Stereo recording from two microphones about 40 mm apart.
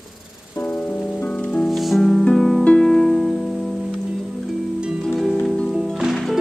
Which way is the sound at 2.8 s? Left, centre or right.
Centre.